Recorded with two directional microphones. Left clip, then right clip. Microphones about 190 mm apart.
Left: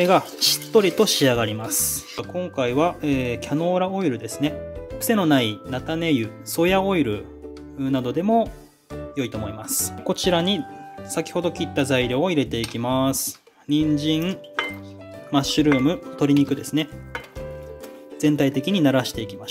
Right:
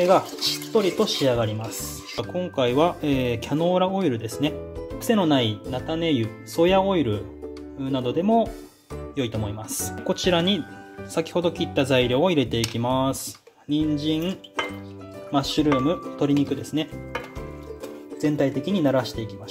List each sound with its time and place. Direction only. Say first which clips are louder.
0.0 s speech: left 1 dB; 35° left (ahead or behind)
2.1 s speech: right 1 dB; 10° left (ahead or behind)
4.9 s speech: left 1 dB; 20° left (ahead or behind)
13.2 s speech: left 5 dB; 60° left (ahead or behind)
14.0 s speech: left 2 dB; 25° left (ahead or behind)
15.5 s speech: left 2 dB; 25° left (ahead or behind)
18.2 s speech: left 3 dB; 30° left (ahead or behind)